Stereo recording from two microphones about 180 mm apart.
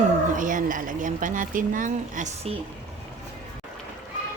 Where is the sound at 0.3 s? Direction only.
45° right (ahead or behind).